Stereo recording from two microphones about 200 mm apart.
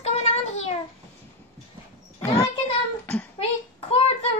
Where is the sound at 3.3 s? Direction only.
30° left (ahead or behind).